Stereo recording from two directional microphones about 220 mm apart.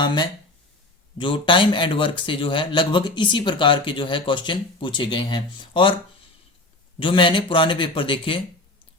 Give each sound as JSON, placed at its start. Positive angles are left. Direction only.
{"t": 0.0, "sound": "a man's voice", "side_deg": 20}
{"t": 7.0, "sound": "a man's voice", "side_deg": 25}